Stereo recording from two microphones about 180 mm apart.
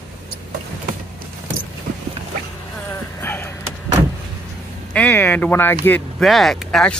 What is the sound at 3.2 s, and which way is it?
Vehicle, 10° left (ahead or behind).